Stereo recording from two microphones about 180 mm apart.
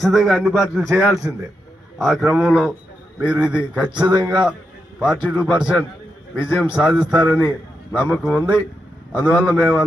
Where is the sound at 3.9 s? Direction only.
25° right (ahead or behind).